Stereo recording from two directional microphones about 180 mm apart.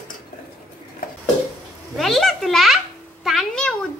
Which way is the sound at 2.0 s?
Centre (ahead or behind).